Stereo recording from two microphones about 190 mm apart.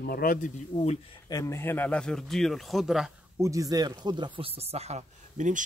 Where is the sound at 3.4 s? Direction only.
15° right (ahead or behind); by 5.6 s 40° right (ahead or behind).